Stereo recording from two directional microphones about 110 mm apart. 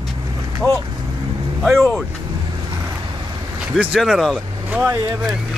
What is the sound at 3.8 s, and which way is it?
Speech, 5° right (ahead or behind).